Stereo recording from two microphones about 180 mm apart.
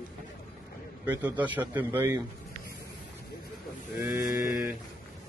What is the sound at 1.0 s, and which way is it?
Mantra, 10° right (ahead or behind).